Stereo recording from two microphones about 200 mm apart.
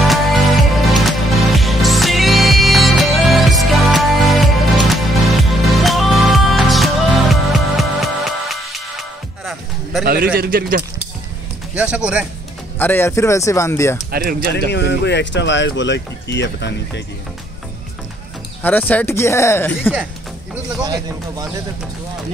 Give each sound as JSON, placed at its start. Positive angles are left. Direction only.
{"t": 0.0, "sound": "music", "side_deg": 0}
{"t": 10.0, "sound": "speech", "side_deg": -45}
{"t": 11.7, "sound": "speech", "side_deg": -5}
{"t": 12.7, "sound": "speech", "side_deg": 10}
{"t": 14.1, "sound": "speech", "side_deg": -50}
{"t": 14.7, "sound": "speech", "side_deg": 60}
{"t": 18.6, "sound": "speech", "side_deg": 10}
{"t": 20.8, "sound": "speech", "side_deg": -20}